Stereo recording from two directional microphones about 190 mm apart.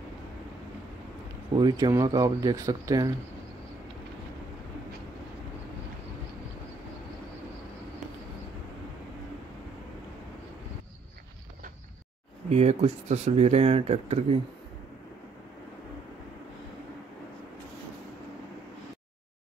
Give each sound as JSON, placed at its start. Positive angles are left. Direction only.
{"t": 1.5, "sound": "speech", "side_deg": -20}
{"t": 12.4, "sound": "speech", "side_deg": -35}